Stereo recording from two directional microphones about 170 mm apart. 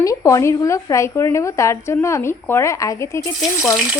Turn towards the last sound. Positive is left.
turn(degrees=0)  # may be behind; listen again after turning